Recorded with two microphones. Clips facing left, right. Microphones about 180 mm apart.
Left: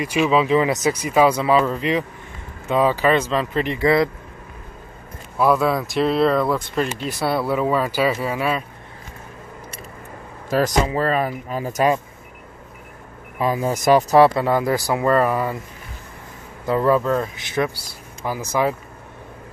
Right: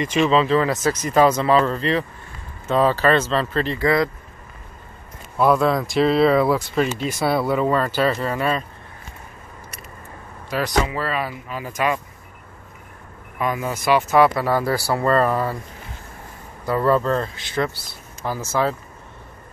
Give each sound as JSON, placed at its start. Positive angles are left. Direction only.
{"t": 0.0, "sound": "speech", "side_deg": 5}
{"t": 5.4, "sound": "speech", "side_deg": 0}
{"t": 10.8, "sound": "speech", "side_deg": 40}
{"t": 13.4, "sound": "speech", "side_deg": 30}
{"t": 14.4, "sound": "speech", "side_deg": 20}
{"t": 16.6, "sound": "speech", "side_deg": 20}
{"t": 16.9, "sound": "speech", "side_deg": 10}